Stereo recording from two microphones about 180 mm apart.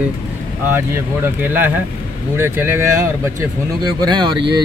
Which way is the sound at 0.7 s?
10° right (ahead or behind).